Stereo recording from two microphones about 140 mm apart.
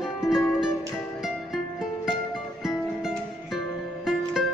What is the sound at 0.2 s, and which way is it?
Music, 5° right (ahead or behind).